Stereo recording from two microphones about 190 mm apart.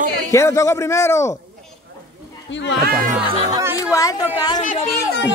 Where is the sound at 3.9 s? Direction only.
20° left (ahead or behind).